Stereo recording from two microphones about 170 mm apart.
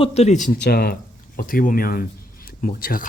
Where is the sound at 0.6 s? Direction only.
65° left (ahead or behind).